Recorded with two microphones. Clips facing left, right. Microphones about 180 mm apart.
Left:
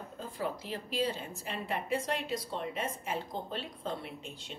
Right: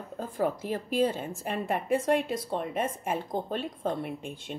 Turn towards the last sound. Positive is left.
turn(degrees=-50)  # may be behind; listen again after turning